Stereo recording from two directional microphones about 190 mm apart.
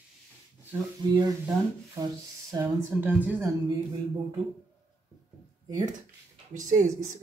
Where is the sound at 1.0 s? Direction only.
25° right (ahead or behind).